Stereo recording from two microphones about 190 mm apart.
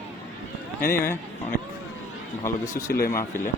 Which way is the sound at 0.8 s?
50° left (ahead or behind).